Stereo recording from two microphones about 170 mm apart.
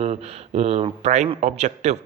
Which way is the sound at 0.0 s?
40° right (ahead or behind).